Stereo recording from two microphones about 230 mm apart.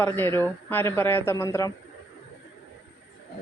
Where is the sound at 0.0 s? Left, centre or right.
Centre.